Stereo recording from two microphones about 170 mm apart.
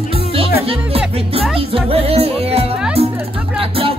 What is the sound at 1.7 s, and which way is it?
Music, 35° right (ahead or behind).